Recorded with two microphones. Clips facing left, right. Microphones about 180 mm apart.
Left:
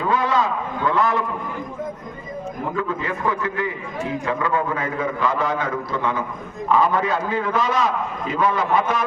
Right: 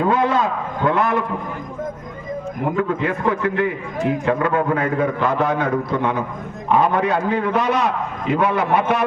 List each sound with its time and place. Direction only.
0.1 s a man's voice: 55° right (ahead or behind)
2.7 s a man's voice: 60° right (ahead or behind)